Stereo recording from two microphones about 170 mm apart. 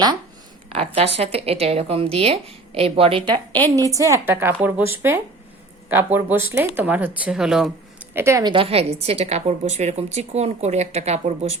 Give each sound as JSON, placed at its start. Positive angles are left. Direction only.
{"t": 0.7, "sound": "a woman's voice", "side_deg": -35}
{"t": 3.8, "sound": "a woman's voice", "side_deg": -20}
{"t": 5.9, "sound": "speech", "side_deg": -10}
{"t": 8.1, "sound": "speech", "side_deg": -15}
{"t": 8.5, "sound": "a woman's voice", "side_deg": -35}